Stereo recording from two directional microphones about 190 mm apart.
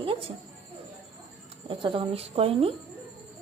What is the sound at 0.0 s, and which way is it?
Music, 30° right (ahead or behind).